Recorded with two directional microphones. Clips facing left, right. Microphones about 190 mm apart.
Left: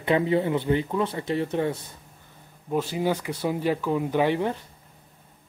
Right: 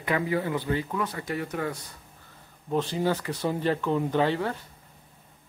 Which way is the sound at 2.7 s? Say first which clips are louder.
Left 1 dB; 10° left (ahead or behind).